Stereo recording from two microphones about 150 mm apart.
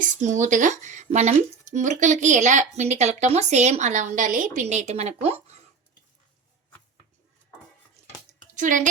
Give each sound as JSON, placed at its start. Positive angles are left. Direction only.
{"t": 0.0, "sound": "speech", "side_deg": -55}
{"t": 8.5, "sound": "a woman's voice", "side_deg": -60}